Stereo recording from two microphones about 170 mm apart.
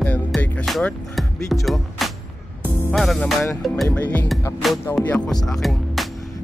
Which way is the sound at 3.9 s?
10° left (ahead or behind).